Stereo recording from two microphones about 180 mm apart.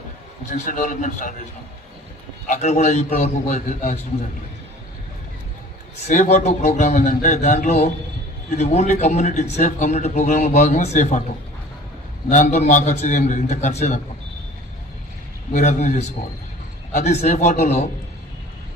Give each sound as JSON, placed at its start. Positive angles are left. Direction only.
{"t": 0.5, "sound": "a man's voice", "side_deg": 45}
{"t": 2.5, "sound": "a man's voice", "side_deg": 40}
{"t": 6.1, "sound": "a man's voice", "side_deg": 40}
{"t": 12.3, "sound": "a man's voice", "side_deg": 40}
{"t": 15.5, "sound": "a man's voice", "side_deg": 40}